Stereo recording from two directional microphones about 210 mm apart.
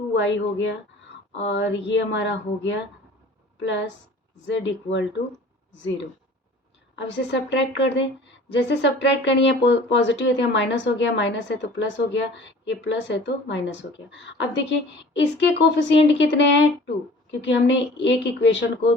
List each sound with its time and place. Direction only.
0.1 s speech: 60° left (ahead or behind)
6.9 s speech: 55° left (ahead or behind)